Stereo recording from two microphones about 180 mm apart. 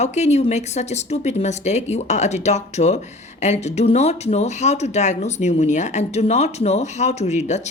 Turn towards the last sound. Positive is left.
turn(degrees=40)  # may be behind; listen again after turning